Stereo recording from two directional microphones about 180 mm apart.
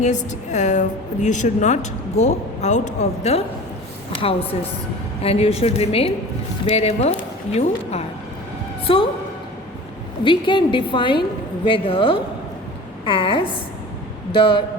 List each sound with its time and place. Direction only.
0.0 s a woman's voice: 40° left (ahead or behind)
10.2 s a woman's voice: 25° left (ahead or behind)